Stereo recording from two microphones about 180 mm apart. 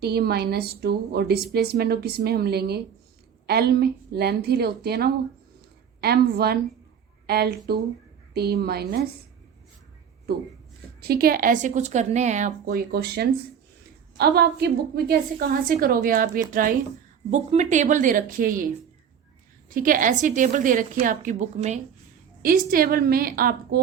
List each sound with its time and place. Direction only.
0.0 s a woman's voice: 60° right (ahead or behind)
11.0 s a woman's voice: 55° right (ahead or behind); by 12.5 s 40° right (ahead or behind)
12.5 s a woman's voice: 60° right (ahead or behind)
19.7 s a woman's voice: 50° right (ahead or behind)
22.4 s a woman's voice: 50° right (ahead or behind)